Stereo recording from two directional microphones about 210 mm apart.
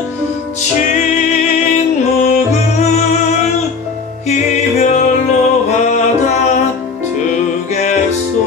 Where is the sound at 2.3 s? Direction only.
35° left (ahead or behind).